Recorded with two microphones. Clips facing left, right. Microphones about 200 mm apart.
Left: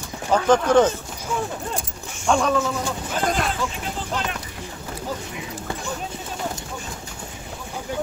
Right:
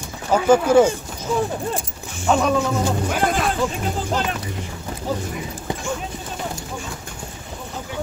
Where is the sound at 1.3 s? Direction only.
35° right (ahead or behind).